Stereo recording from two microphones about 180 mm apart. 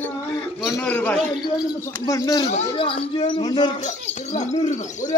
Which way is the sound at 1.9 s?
20° left (ahead or behind).